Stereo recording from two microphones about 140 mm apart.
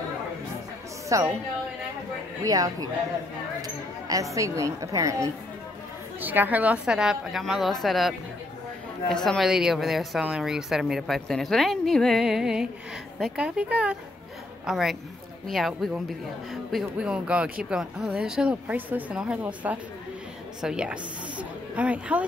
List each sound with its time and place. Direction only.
1.0 s music: 20° right (ahead or behind)
2.4 s a woman's voice: 25° right (ahead or behind); by 8.1 s centre (ahead or behind)
9.1 s a woman's voice: 5° left (ahead or behind)